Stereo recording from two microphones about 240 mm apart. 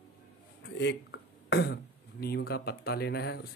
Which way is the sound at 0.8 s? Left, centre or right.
Left.